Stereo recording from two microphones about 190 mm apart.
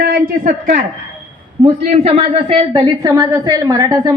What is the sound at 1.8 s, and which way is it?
Speech, 30° right (ahead or behind).